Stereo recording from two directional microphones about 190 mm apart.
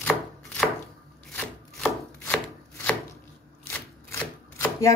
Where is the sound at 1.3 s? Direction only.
10° left (ahead or behind).